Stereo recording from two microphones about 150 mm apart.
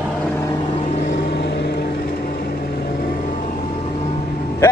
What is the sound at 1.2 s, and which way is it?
Vehicle, 90° left.